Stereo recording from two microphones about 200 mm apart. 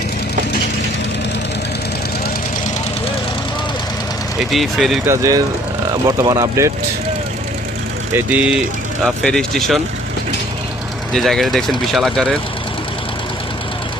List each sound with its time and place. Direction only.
4.5 s speech: centre (ahead or behind)
5.0 s speech: 15° right (ahead or behind)
8.1 s speech: 5° right (ahead or behind)
11.1 s speech: centre (ahead or behind)